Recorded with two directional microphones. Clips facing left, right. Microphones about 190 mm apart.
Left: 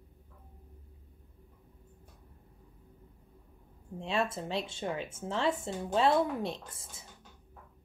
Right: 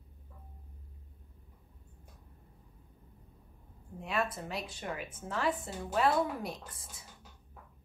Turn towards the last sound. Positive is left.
turn(degrees=25)  # may be behind; listen again after turning